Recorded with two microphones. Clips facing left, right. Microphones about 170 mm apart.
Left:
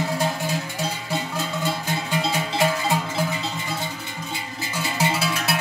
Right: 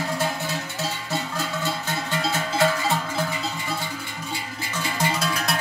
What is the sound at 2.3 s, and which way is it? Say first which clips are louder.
Music: right 1 dB; 15° left (ahead or behind).